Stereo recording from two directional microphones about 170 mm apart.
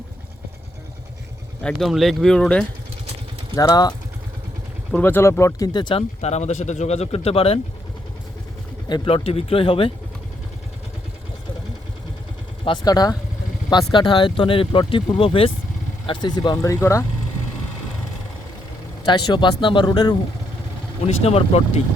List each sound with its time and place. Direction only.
1.6 s speech: centre (ahead or behind)
3.5 s speech: 20° left (ahead or behind)
4.9 s speech: 10° left (ahead or behind); by 7.6 s 35° left (ahead or behind)
8.9 s speech: 35° left (ahead or behind)
12.6 s speech: 25° left (ahead or behind)
19.0 s speech: 25° left (ahead or behind)
21.1 s speech: 35° left (ahead or behind)